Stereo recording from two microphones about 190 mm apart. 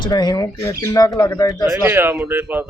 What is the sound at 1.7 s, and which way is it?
Speech, 10° right (ahead or behind).